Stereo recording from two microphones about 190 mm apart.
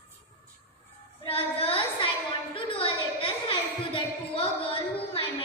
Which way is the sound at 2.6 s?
30° left (ahead or behind).